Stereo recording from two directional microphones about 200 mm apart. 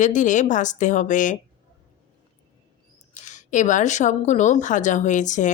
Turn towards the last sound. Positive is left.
turn(degrees=40)  # may be behind; listen again after turning